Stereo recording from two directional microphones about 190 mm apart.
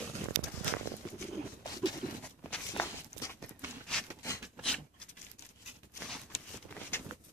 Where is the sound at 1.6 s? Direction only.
20° left (ahead or behind).